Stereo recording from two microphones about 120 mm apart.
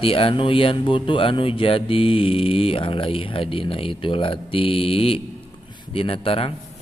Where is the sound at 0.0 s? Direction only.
50° left (ahead or behind).